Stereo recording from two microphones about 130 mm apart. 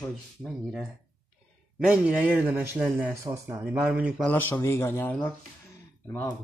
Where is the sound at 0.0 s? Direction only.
10° left (ahead or behind).